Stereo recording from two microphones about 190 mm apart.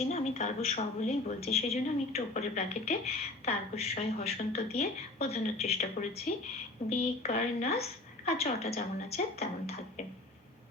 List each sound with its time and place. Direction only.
0.1 s a woman's voice: 35° left (ahead or behind)